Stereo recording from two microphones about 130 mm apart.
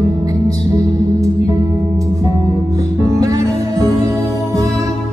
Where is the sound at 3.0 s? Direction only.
25° right (ahead or behind).